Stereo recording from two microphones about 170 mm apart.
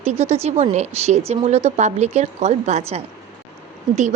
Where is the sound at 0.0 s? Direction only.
40° right (ahead or behind).